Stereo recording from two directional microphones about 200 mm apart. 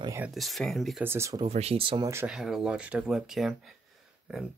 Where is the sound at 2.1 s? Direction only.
10° right (ahead or behind).